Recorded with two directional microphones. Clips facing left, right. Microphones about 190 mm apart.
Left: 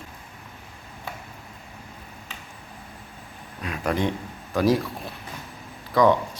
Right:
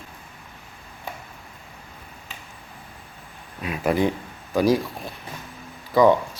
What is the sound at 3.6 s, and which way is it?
A man's voice, 5° right (ahead or behind).